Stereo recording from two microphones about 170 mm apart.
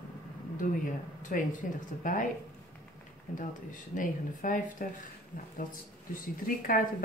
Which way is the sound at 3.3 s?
50° left (ahead or behind).